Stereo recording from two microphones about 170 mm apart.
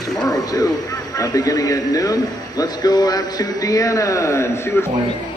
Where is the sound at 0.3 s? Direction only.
20° left (ahead or behind).